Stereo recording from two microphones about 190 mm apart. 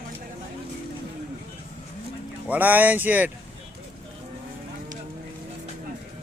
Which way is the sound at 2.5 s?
10° right (ahead or behind).